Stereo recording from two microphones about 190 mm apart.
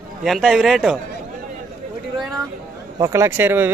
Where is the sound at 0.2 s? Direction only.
Centre (ahead or behind).